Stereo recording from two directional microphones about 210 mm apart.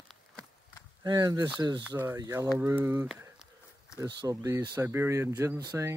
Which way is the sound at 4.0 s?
15° right (ahead or behind).